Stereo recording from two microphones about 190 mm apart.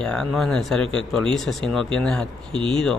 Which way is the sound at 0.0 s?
5° left (ahead or behind).